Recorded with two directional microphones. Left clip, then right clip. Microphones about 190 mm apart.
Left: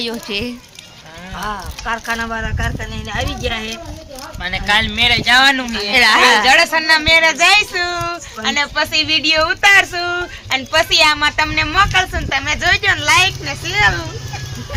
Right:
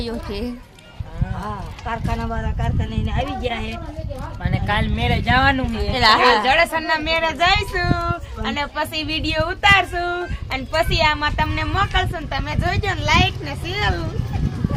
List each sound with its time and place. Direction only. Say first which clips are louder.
0.0 s speech: left 6 dB; 20° left (ahead or behind)
1.4 s speech: left 8 dB; centre (ahead or behind)
4.4 s speech: left 8 dB; 25° right (ahead or behind)
5.9 s speech: left 4 dB; 15° left (ahead or behind); by 14.0 s centre (ahead or behind)